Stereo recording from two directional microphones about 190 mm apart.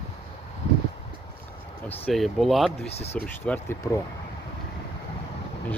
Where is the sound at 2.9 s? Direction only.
35° left (ahead or behind).